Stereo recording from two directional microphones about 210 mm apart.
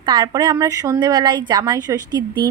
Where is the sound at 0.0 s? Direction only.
20° right (ahead or behind).